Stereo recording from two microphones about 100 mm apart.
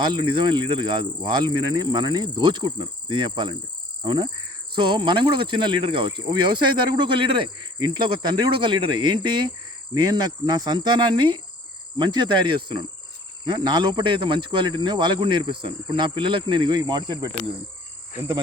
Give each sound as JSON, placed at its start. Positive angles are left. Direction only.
{"t": 0.0, "sound": "speech", "side_deg": -50}